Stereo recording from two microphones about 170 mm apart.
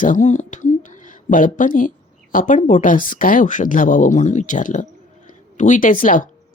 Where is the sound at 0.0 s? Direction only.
50° left (ahead or behind).